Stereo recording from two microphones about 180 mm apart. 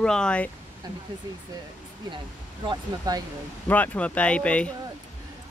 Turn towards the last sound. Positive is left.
turn(degrees=5)  # may be behind; listen again after turning